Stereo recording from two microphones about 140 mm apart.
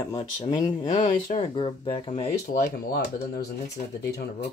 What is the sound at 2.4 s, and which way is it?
Speech, 90° left.